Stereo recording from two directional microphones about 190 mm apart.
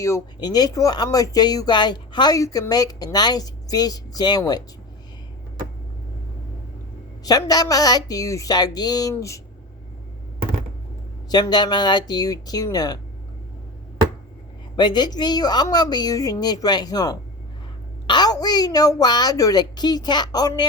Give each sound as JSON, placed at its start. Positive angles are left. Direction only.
{"t": 0.0, "sound": "speech", "side_deg": 20}
{"t": 7.3, "sound": "speech", "side_deg": 20}
{"t": 11.3, "sound": "speech", "side_deg": 20}
{"t": 14.8, "sound": "speech", "side_deg": 20}